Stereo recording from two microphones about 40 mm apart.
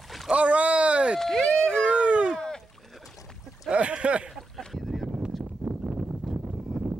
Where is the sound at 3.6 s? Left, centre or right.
Right.